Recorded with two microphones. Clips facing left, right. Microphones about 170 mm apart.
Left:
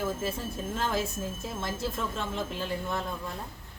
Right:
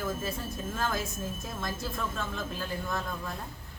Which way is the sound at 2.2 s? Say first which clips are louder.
Left 2 dB; 25° left (ahead or behind).